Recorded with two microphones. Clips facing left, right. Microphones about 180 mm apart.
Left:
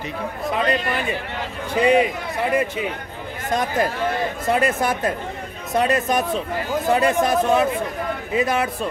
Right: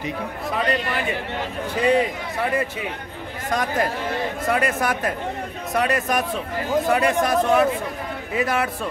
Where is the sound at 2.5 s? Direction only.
20° left (ahead or behind).